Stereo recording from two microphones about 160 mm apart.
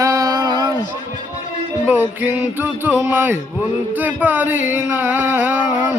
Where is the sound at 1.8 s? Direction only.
10° right (ahead or behind).